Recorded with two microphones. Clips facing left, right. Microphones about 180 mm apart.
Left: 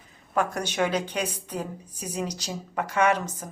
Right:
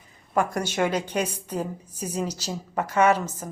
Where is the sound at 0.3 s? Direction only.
10° right (ahead or behind).